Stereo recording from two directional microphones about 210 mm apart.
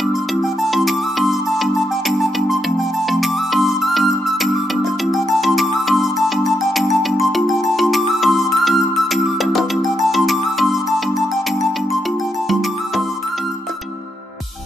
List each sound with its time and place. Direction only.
0.4 s music: centre (ahead or behind)